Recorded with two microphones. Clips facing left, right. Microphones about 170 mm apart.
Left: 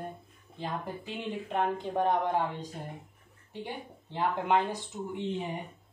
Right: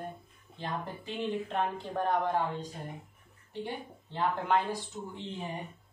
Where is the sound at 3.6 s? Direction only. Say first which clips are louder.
Right 1 dB; 15° left (ahead or behind).